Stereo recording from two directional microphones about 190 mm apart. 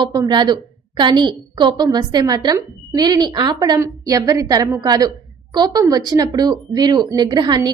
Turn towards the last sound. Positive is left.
turn(degrees=-20)  # may be behind; listen again after turning